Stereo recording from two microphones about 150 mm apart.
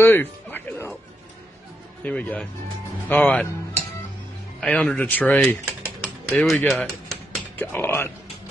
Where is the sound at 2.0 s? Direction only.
10° left (ahead or behind).